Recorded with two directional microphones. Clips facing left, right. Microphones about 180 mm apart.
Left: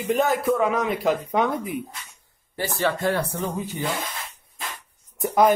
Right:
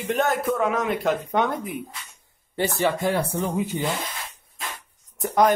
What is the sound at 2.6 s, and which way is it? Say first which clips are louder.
Speech: right 2 dB; 20° right (ahead or behind).